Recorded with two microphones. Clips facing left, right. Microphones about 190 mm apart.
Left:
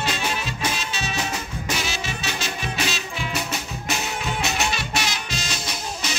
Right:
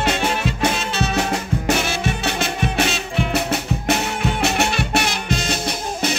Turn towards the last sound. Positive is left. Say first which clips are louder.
# right 8 dB
turn(degrees=-55)  # may be behind; listen again after turning